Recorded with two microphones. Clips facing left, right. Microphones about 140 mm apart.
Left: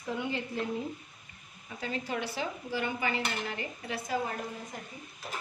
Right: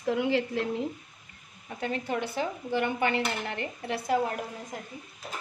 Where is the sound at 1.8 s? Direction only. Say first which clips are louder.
Right 4 dB; 55° right (ahead or behind).